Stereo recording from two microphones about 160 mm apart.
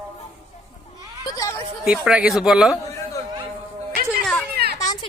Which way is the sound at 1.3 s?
15° left (ahead or behind).